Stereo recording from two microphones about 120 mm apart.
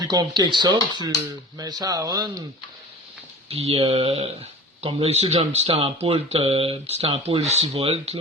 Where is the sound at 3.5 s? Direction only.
55° right (ahead or behind).